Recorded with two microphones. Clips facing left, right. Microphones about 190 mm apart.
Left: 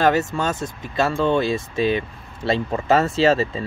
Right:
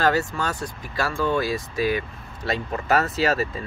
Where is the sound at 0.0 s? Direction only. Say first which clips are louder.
Left 3 dB; 20° left (ahead or behind).